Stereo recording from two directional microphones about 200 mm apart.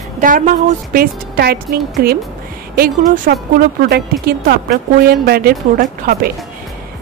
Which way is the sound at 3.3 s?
50° right (ahead or behind).